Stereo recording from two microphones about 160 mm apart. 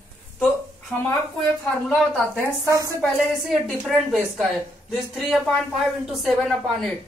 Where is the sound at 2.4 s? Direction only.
20° right (ahead or behind).